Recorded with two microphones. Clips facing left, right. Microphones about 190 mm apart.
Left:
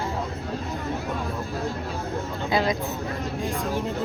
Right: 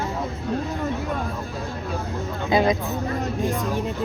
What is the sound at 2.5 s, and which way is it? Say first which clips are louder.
Speech: right 4 dB; 20° right (ahead or behind).